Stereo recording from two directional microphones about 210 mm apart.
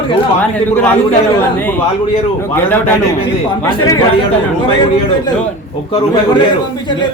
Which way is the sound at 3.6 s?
20° left (ahead or behind).